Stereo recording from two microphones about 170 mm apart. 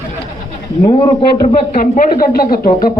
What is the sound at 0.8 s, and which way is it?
Speech, 30° left (ahead or behind).